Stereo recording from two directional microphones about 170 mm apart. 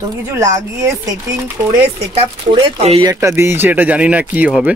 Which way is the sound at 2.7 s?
40° right (ahead or behind).